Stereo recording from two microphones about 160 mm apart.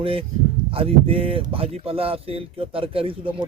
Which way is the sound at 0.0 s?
35° right (ahead or behind).